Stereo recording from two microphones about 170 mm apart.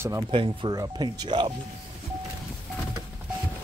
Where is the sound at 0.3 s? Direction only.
30° right (ahead or behind).